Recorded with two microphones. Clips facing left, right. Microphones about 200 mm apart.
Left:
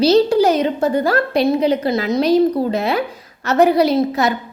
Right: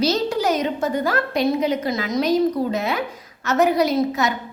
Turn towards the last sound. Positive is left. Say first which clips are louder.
# left 4 dB
turn(degrees=35)  # may be behind; listen again after turning